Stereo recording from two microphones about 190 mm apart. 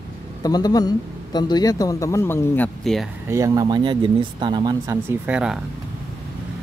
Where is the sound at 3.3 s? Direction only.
15° right (ahead or behind).